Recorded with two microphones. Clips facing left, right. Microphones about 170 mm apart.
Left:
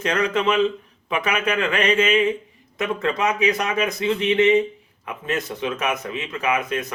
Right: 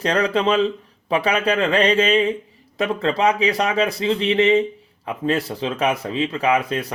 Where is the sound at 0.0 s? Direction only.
35° right (ahead or behind).